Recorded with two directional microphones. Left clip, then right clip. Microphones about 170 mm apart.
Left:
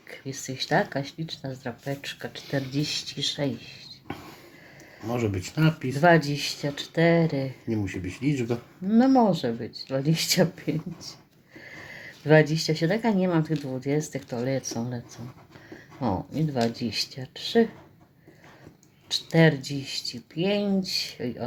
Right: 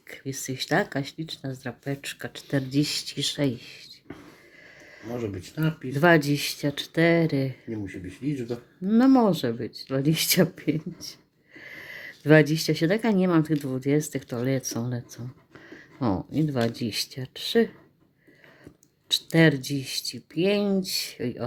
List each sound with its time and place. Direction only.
0.1 s speech: 40° right (ahead or behind)
5.1 s speech: 35° left (ahead or behind)
5.9 s speech: 45° right (ahead or behind)
7.7 s speech: 35° left (ahead or behind)
8.9 s speech: 45° right (ahead or behind)
19.0 s speech: 45° right (ahead or behind)